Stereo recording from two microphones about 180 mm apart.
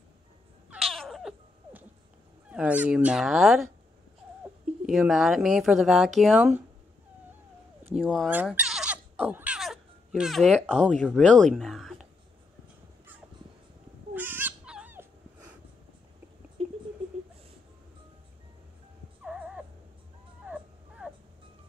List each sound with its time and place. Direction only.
0.7 s cat: centre (ahead or behind)
2.5 s speech: 5° right (ahead or behind)
4.8 s speech: 5° right (ahead or behind)
7.9 s speech: centre (ahead or behind)
8.4 s goat: 5° right (ahead or behind)
11.1 s speech: 5° left (ahead or behind)
14.1 s dog: 10° right (ahead or behind)
16.6 s a sound: 35° right (ahead or behind)
19.2 s dog: 5° right (ahead or behind)
20.4 s a sound: 5° right (ahead or behind)